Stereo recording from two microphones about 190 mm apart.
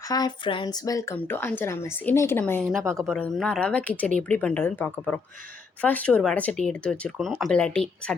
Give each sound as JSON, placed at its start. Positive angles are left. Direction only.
{"t": 0.1, "sound": "speech", "side_deg": 20}
{"t": 2.8, "sound": "speech", "side_deg": -15}
{"t": 3.1, "sound": "speech", "side_deg": 5}